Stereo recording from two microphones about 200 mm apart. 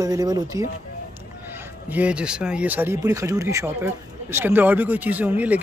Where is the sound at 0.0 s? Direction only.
20° right (ahead or behind).